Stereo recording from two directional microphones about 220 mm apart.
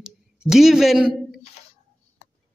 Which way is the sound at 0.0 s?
Centre (ahead or behind).